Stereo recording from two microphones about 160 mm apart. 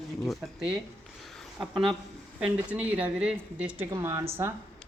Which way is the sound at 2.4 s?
10° right (ahead or behind).